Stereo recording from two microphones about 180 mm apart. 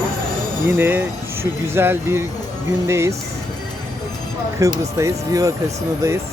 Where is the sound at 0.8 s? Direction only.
10° right (ahead or behind).